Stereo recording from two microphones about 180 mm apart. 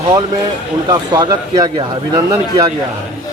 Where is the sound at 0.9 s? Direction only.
20° right (ahead or behind).